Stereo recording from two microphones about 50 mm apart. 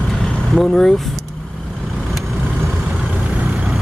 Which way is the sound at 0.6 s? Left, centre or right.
Centre.